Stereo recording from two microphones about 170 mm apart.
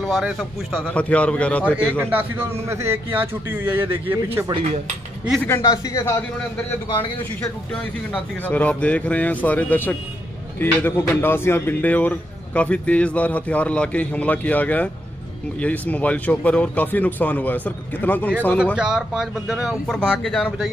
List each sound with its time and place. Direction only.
0.0 s speech: centre (ahead or behind)
2.0 s a man's voice: 10° right (ahead or behind)
4.5 s cutlery: 30° right (ahead or behind)
5.4 s speech: 15° left (ahead or behind)
18.8 s speech: 5° right (ahead or behind)